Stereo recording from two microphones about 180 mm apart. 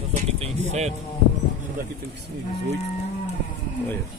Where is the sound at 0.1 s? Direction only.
40° right (ahead or behind).